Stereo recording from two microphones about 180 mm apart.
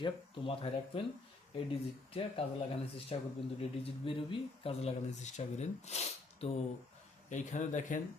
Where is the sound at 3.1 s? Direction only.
35° left (ahead or behind).